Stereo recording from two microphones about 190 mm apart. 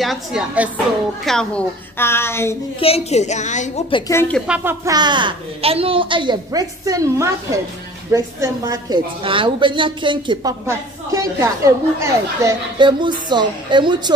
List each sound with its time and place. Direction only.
0.0 s a woman's voice: centre (ahead or behind)
2.8 s a woman's voice: 35° left (ahead or behind)
4.1 s a woman's voice: 15° left (ahead or behind)
4.5 s a woman's voice: 15° right (ahead or behind)